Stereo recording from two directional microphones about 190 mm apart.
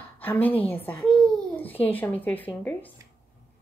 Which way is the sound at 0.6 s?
10° left (ahead or behind).